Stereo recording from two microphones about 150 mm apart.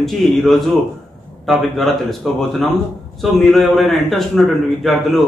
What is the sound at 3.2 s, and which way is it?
A man's voice, centre (ahead or behind).